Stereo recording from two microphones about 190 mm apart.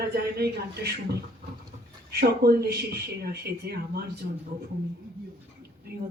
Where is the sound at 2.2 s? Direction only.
55° right (ahead or behind).